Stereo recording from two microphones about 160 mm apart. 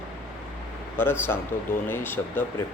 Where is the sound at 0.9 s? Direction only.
15° left (ahead or behind).